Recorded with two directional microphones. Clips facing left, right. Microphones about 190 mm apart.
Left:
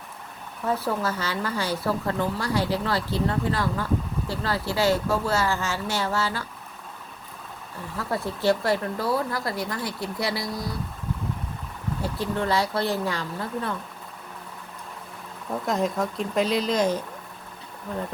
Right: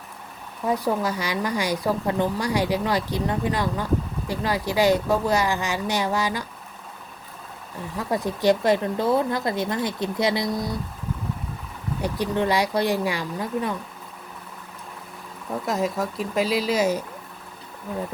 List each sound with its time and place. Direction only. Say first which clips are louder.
0.6 s speech: right 3 dB; 15° right (ahead or behind)
7.9 s speech: right 3 dB; 15° right (ahead or behind)
12.0 s speech: right 4 dB; 15° right (ahead or behind)
15.4 s speech: even; centre (ahead or behind)